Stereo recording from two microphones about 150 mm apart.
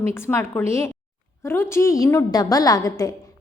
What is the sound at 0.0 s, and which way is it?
A woman's voice, 15° left (ahead or behind).